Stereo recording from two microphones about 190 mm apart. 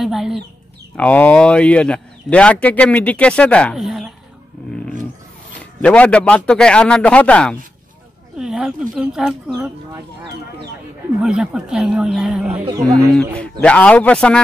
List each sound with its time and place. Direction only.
0.0 s chicken: centre (ahead or behind)
0.9 s speech: 10° left (ahead or behind)
5.6 s a man's voice: 5° left (ahead or behind)
11.2 s a man's voice: 5° right (ahead or behind)
12.6 s speech: 20° right (ahead or behind)
13.1 s a man's voice: 5° left (ahead or behind)